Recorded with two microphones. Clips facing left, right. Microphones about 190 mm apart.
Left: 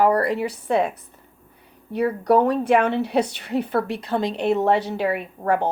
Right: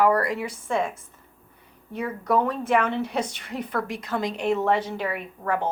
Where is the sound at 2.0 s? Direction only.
35° left (ahead or behind).